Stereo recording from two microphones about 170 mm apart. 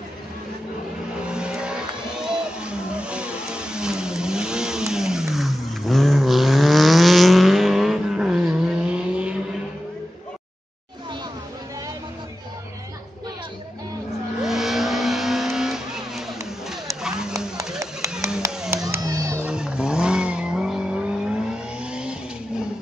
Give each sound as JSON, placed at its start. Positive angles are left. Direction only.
{"t": 1.2, "sound": "vehicle", "side_deg": -5}
{"t": 14.4, "sound": "vehicle", "side_deg": 0}
{"t": 18.4, "sound": "a sound", "side_deg": -20}
{"t": 18.9, "sound": "crowd", "side_deg": -20}
{"t": 19.4, "sound": "vehicle", "side_deg": -5}